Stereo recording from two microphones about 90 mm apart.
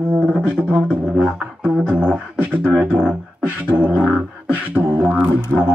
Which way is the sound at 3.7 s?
20° right (ahead or behind).